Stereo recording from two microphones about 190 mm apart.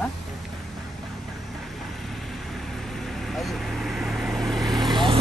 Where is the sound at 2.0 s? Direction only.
Centre (ahead or behind).